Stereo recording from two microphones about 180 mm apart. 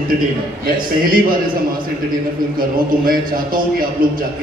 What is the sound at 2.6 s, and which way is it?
A man's voice, 55° right (ahead or behind).